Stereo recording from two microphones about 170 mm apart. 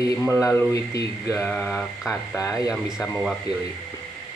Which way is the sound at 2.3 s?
20° left (ahead or behind).